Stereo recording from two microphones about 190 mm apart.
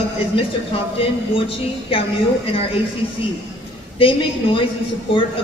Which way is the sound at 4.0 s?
30° left (ahead or behind).